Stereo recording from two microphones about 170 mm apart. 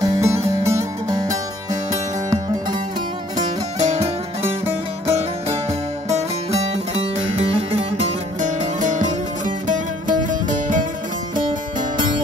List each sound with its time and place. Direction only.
0.0 s music: 20° right (ahead or behind)
3.8 s music: 40° right (ahead or behind)